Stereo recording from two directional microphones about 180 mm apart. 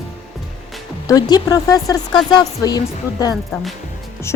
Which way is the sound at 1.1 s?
20° left (ahead or behind).